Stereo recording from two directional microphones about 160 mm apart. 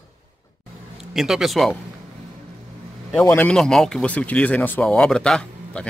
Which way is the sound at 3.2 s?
10° left (ahead or behind).